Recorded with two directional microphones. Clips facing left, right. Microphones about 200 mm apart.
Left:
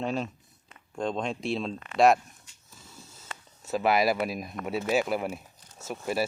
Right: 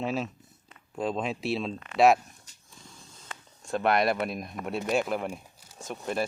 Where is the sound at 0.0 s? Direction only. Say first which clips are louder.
Even; 5° right (ahead or behind).